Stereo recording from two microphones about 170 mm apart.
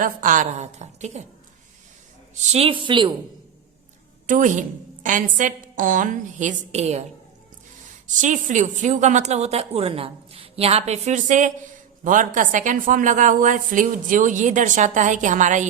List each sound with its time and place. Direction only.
0.0 s a woman's voice: 50° right (ahead or behind)
2.5 s speech: 35° right (ahead or behind)
4.3 s a woman's voice: 50° right (ahead or behind)
8.0 s a woman's voice: 45° right (ahead or behind)